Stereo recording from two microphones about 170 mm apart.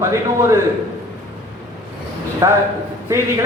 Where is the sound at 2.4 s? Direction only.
15° right (ahead or behind).